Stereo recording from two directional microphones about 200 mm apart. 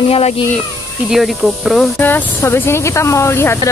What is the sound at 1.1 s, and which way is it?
Speech, centre (ahead or behind).